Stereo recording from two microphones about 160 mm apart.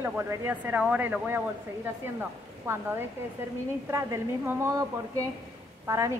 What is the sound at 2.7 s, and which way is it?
Speech, 15° right (ahead or behind).